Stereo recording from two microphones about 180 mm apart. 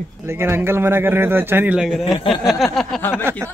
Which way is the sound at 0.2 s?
15° right (ahead or behind).